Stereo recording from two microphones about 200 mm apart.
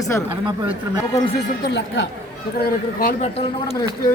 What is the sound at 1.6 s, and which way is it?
Speech, 65° left (ahead or behind).